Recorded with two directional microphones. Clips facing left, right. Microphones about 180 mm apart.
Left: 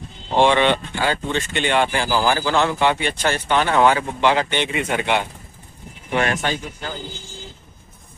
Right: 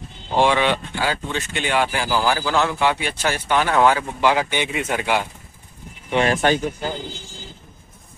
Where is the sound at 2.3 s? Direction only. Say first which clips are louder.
Left 1 dB; 5° right (ahead or behind).